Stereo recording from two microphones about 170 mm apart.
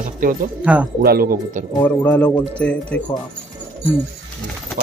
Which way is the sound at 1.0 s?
60° right (ahead or behind).